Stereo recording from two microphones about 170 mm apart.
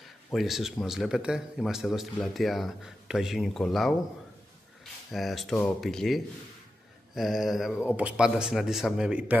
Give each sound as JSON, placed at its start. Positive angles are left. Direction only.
{"t": 0.3, "sound": "a man's voice", "side_deg": 0}
{"t": 5.1, "sound": "a man's voice", "side_deg": 0}